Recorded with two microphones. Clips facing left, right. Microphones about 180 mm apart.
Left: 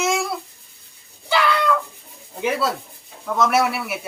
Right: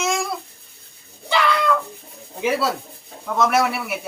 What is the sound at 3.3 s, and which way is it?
Speech, centre (ahead or behind).